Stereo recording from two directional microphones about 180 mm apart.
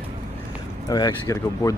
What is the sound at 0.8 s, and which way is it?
Speech, 20° left (ahead or behind).